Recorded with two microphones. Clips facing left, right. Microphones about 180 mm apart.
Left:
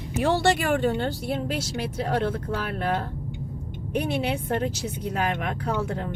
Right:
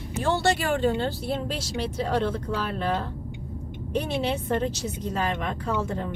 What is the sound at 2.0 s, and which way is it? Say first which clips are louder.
Speech: left 1 dB; 50° left (ahead or behind).